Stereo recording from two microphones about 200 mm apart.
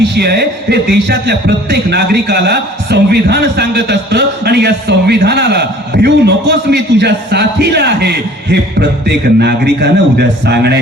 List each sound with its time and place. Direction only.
0.0 s speech: 55° right (ahead or behind)